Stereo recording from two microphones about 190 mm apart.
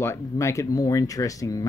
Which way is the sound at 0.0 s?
15° left (ahead or behind).